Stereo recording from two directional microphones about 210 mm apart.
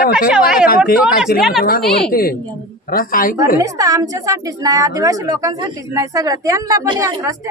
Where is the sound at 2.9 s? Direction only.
45° left (ahead or behind).